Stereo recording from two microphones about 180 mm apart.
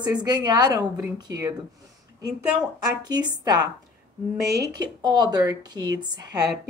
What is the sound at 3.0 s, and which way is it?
Speech, 20° right (ahead or behind).